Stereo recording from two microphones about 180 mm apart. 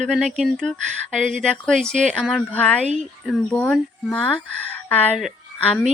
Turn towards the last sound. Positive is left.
turn(degrees=10)  # may be behind; listen again after turning